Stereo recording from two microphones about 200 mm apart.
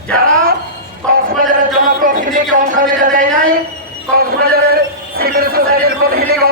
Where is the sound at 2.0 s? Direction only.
40° right (ahead or behind).